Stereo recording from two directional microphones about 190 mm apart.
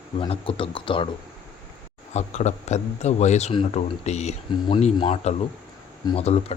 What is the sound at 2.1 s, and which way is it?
A man's voice, 35° left (ahead or behind).